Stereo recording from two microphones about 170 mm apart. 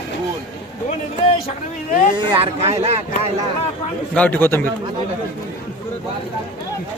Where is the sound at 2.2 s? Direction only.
35° right (ahead or behind).